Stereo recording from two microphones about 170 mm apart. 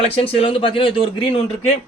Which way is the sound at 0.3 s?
30° left (ahead or behind).